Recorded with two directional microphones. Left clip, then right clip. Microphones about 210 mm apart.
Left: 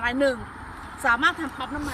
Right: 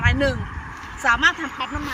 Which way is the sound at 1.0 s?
Centre (ahead or behind).